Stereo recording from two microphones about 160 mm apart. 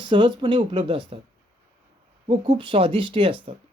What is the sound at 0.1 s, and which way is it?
Speech, 30° right (ahead or behind).